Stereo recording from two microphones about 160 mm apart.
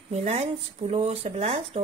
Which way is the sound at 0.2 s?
45° right (ahead or behind).